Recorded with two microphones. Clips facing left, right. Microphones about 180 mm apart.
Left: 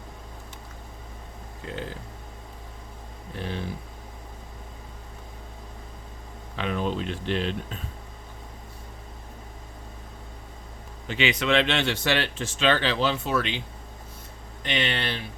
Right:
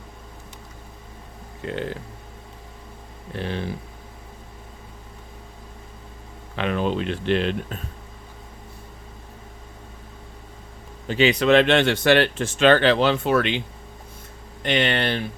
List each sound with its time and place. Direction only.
1.6 s speech: 65° right (ahead or behind)
3.3 s speech: 75° right (ahead or behind)
6.6 s speech: 70° right (ahead or behind)
11.1 s speech: 35° right (ahead or behind); by 13.6 s 60° right (ahead or behind)
14.6 s speech: 55° right (ahead or behind)